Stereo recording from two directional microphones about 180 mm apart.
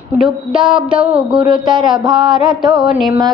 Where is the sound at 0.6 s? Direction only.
25° right (ahead or behind).